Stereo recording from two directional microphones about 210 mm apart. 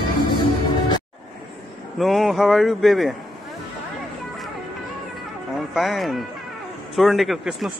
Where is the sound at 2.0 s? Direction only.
Centre (ahead or behind).